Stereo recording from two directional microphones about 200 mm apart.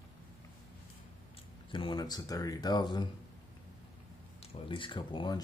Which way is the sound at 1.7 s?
20° left (ahead or behind).